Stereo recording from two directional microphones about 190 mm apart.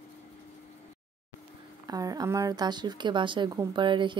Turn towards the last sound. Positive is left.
turn(degrees=-25)  # may be behind; listen again after turning